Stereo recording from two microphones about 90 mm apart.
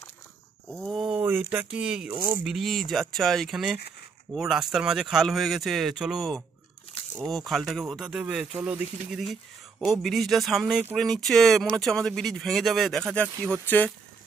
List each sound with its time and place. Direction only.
0.7 s a sound: 5° left (ahead or behind)
1.1 s speech: 20° right (ahead or behind)
1.7 s speech: 5° right (ahead or behind)
2.1 s speech: 30° right (ahead or behind)
2.4 s speech: centre (ahead or behind)
9.2 s speech: centre (ahead or behind); by 13.9 s 15° left (ahead or behind)